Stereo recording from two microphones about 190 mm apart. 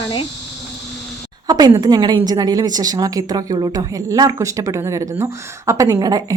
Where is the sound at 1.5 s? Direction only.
20° right (ahead or behind).